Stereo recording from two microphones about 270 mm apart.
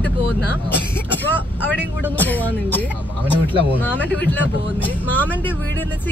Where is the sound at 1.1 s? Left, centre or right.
Centre.